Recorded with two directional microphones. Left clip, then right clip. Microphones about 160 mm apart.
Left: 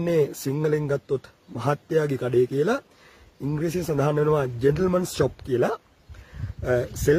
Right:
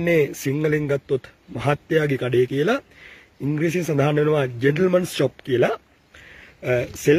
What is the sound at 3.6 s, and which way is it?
Speech, 25° right (ahead or behind).